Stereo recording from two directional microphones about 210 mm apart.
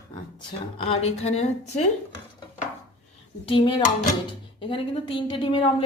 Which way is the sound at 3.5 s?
25° left (ahead or behind).